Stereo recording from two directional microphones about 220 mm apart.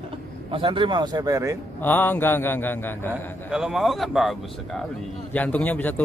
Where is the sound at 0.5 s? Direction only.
25° right (ahead or behind).